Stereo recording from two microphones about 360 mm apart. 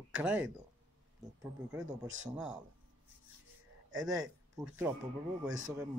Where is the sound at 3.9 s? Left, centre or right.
Centre.